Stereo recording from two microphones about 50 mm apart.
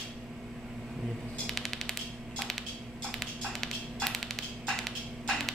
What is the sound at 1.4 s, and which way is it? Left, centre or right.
Typewriter, centre.